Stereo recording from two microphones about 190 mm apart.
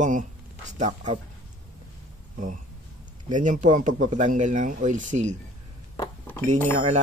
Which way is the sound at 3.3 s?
40° right (ahead or behind).